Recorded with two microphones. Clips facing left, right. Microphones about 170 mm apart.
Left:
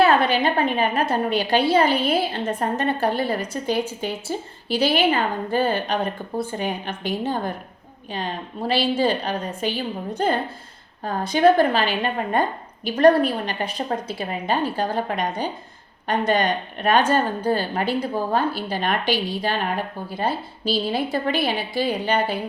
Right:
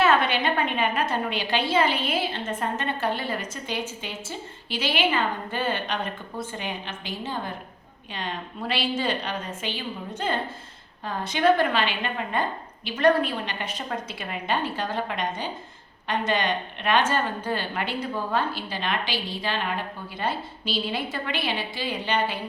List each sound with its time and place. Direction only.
0.0 s a woman's voice: 35° left (ahead or behind)